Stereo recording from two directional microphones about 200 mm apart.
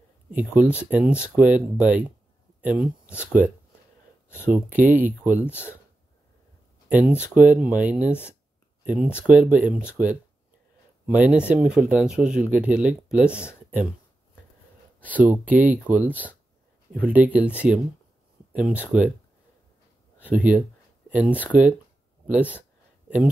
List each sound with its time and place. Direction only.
0.3 s speech: 5° right (ahead or behind)
4.7 s speech: 10° right (ahead or behind)
6.9 s speech: 10° right (ahead or behind)
8.1 s speech: 10° left (ahead or behind)
8.8 s speech: 5° right (ahead or behind)
11.1 s speech: 5° right (ahead or behind)
13.3 s speech: 10° left (ahead or behind)
15.0 s speech: 10° right (ahead or behind)
17.0 s speech: 5° right (ahead or behind)
20.2 s speech: 10° right (ahead or behind)